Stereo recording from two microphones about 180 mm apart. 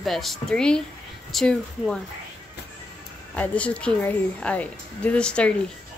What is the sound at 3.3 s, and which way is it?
A woman's voice, 10° left (ahead or behind).